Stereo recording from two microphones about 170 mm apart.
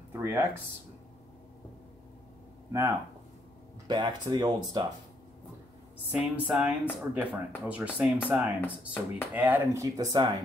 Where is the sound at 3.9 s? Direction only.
25° right (ahead or behind).